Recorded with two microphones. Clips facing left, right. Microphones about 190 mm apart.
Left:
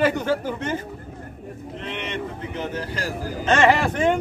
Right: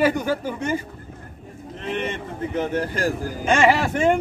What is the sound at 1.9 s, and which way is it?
Speech, 50° right (ahead or behind).